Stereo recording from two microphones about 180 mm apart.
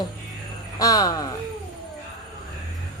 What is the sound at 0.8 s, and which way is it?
Speech, 20° left (ahead or behind).